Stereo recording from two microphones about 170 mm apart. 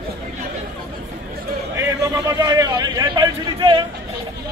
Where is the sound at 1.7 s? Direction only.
20° right (ahead or behind).